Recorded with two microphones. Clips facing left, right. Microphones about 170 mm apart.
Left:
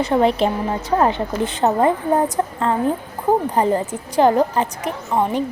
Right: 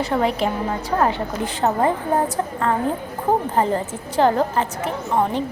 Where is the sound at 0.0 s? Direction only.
25° left (ahead or behind).